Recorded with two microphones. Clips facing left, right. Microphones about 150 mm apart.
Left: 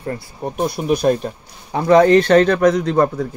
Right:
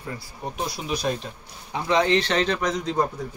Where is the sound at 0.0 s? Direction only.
55° left (ahead or behind).